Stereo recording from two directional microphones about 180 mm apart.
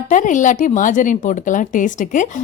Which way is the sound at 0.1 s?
45° left (ahead or behind).